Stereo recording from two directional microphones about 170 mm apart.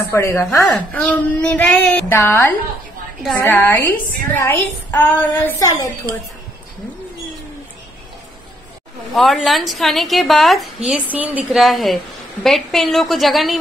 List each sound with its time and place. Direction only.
0.0 s speech: 15° left (ahead or behind)
9.1 s a woman's voice: centre (ahead or behind)